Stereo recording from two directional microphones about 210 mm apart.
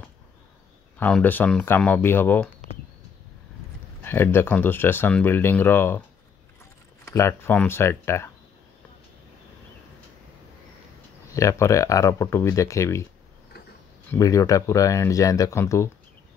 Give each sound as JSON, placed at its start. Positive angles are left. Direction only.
{"t": 0.9, "sound": "speech", "side_deg": 5}
{"t": 4.0, "sound": "speech", "side_deg": 10}
{"t": 11.3, "sound": "speech", "side_deg": 15}
{"t": 14.1, "sound": "speech", "side_deg": 15}